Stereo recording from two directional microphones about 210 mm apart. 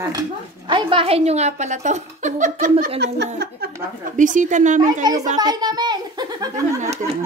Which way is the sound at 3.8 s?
40° right (ahead or behind).